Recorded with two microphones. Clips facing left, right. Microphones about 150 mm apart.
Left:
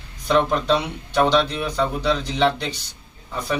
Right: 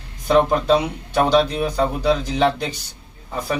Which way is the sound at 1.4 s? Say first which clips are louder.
Right 3 dB; 45° right (ahead or behind).